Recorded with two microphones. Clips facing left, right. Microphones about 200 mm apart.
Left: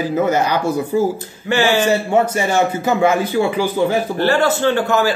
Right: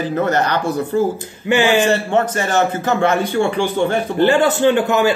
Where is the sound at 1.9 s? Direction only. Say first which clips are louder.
Left 1 dB; 10° left (ahead or behind).